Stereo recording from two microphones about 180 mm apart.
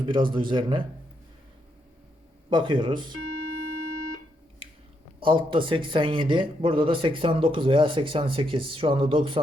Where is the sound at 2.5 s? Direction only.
25° right (ahead or behind).